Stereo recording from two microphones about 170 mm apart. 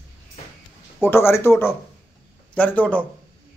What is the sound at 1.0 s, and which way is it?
Speech, 15° left (ahead or behind).